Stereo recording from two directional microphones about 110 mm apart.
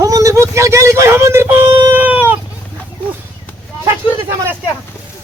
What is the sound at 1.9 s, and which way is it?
Cat, 15° right (ahead or behind).